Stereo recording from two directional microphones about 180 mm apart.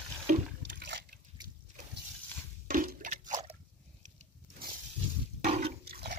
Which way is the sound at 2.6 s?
50° right (ahead or behind).